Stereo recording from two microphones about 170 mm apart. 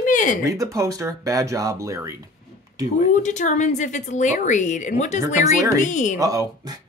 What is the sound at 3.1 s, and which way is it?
A woman's voice, 45° left (ahead or behind).